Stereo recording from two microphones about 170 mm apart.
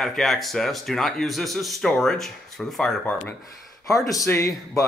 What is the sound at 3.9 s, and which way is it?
Speech, 20° left (ahead or behind).